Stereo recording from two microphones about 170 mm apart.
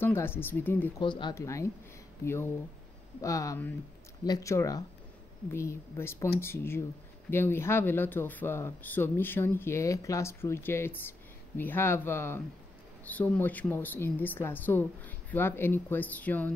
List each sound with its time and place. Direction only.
0.0 s speech: 15° left (ahead or behind)
0.9 s speech: 25° left (ahead or behind)
1.3 s speech: 15° left (ahead or behind)